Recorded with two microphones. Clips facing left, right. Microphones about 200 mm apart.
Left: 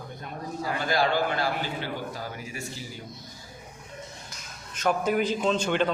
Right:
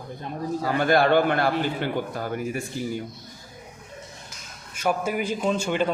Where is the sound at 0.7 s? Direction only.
55° right (ahead or behind).